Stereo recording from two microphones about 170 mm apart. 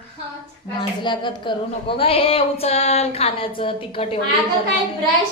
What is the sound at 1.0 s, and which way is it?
Speech, 25° left (ahead or behind).